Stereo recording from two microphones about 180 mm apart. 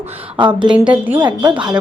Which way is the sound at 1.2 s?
25° right (ahead or behind).